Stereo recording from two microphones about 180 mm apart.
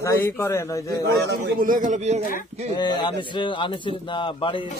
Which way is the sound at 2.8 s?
25° left (ahead or behind).